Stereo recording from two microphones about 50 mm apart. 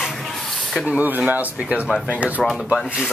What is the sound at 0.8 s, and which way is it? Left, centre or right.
Speech, right.